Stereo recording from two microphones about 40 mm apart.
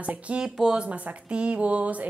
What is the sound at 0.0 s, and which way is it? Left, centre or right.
A woman's voice, right.